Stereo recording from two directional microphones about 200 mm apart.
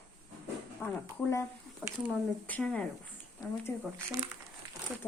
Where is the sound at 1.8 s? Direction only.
5° right (ahead or behind).